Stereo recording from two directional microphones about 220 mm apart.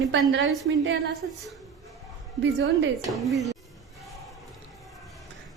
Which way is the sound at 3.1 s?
Centre (ahead or behind).